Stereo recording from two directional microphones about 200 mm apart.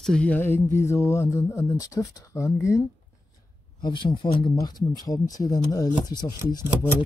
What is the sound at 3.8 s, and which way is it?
Speech, 25° left (ahead or behind).